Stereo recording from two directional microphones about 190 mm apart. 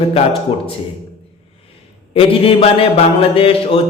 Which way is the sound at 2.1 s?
30° left (ahead or behind).